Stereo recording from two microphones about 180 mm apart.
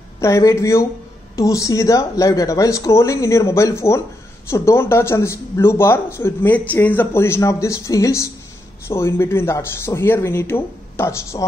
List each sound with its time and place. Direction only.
0.2 s speech: 15° left (ahead or behind)